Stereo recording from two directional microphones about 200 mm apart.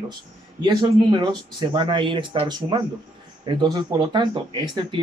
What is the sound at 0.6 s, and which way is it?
Speech, 20° right (ahead or behind).